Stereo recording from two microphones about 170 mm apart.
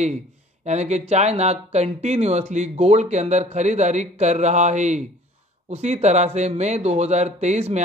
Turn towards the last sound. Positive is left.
turn(degrees=-40)  # may be behind; listen again after turning